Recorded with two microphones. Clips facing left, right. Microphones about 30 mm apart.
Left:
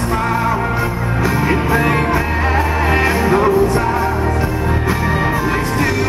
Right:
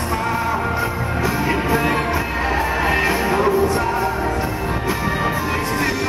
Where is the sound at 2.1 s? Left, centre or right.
Left.